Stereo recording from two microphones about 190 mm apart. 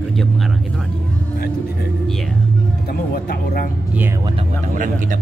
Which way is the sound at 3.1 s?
50° left (ahead or behind).